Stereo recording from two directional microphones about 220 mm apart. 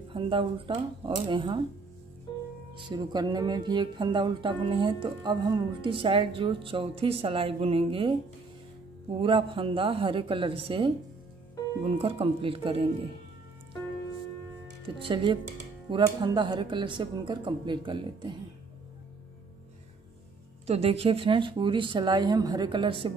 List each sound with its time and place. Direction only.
0.1 s speech: 25° right (ahead or behind)
2.7 s speech: 20° right (ahead or behind)
9.1 s speech: 25° right (ahead or behind)
15.0 s speech: 25° right (ahead or behind)
20.6 s speech: 30° right (ahead or behind)